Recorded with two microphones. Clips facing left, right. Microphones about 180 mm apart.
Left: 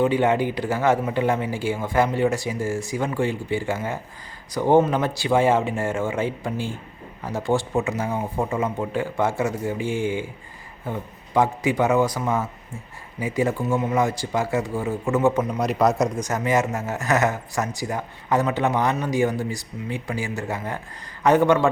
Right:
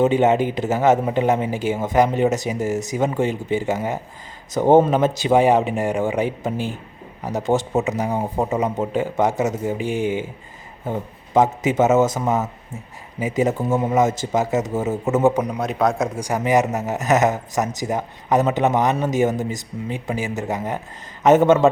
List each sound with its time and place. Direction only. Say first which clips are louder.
0.0 s a man's voice: right 3 dB; 20° right (ahead or behind)
11.3 s a man's voice: right 3 dB; 20° right (ahead or behind)
15.5 s a man's voice: even; centre (ahead or behind); by 21.7 s 20° right (ahead or behind)